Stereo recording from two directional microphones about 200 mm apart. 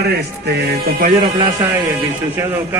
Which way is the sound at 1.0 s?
35° right (ahead or behind).